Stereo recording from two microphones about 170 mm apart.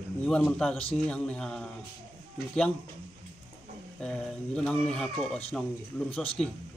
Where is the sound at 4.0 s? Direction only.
5° left (ahead or behind).